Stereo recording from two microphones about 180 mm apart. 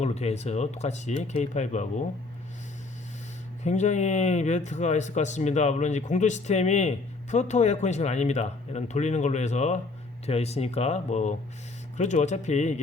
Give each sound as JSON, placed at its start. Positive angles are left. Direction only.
{"t": 0.0, "sound": "speech", "side_deg": 35}
{"t": 3.6, "sound": "speech", "side_deg": 40}